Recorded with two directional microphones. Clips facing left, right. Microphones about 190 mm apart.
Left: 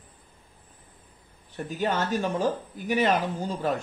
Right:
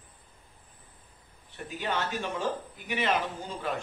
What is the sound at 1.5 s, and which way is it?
Speech, 40° left (ahead or behind).